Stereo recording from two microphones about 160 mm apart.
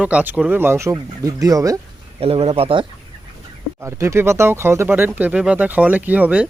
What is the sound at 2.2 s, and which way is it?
Speech, 35° right (ahead or behind).